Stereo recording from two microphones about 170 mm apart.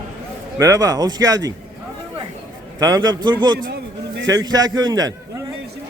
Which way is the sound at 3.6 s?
80° right.